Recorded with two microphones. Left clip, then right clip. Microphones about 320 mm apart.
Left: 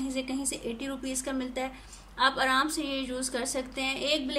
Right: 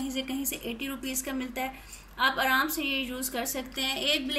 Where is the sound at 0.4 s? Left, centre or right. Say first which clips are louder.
Even; left.